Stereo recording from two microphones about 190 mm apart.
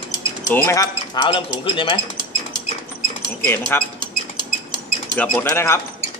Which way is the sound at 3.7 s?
10° left (ahead or behind).